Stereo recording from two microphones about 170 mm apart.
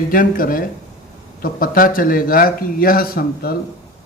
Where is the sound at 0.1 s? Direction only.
55° left (ahead or behind).